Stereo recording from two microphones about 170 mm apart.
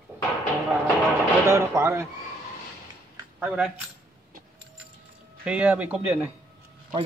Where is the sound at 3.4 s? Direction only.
5° right (ahead or behind).